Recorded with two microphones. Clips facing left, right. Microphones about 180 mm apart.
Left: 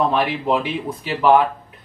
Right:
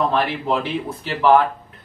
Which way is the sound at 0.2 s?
10° left (ahead or behind).